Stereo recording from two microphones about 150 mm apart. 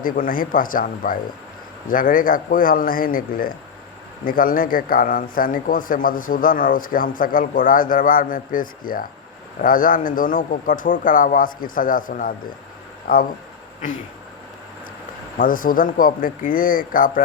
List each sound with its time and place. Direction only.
0.0 s a man's voice: 65° left (ahead or behind)
13.1 s a man's voice: 75° left (ahead or behind)
15.4 s a man's voice: 65° left (ahead or behind)